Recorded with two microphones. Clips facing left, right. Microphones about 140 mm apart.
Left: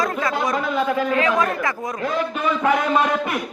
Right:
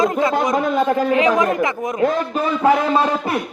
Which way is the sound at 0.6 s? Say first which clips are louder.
Right 4 dB; 45° right (ahead or behind).